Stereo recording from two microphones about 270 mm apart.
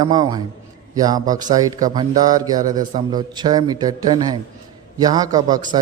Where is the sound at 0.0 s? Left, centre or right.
Centre.